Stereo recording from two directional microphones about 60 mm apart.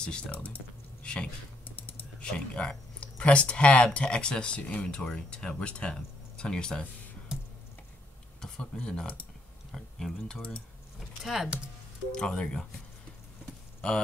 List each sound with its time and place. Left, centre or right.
0.0 s speech: centre
1.8 s typing: left
2.2 s speech: centre
8.4 s speech: centre
9.7 s speech: centre
11.2 s speech: centre
12.1 s speech: centre
13.7 s speech: centre